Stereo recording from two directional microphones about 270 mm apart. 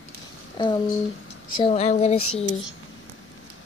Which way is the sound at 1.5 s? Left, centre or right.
Left.